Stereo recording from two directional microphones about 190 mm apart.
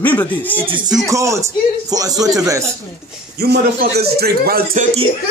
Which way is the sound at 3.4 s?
55° right (ahead or behind).